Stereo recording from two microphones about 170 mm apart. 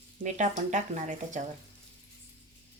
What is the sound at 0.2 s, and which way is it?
Speech, 45° right (ahead or behind).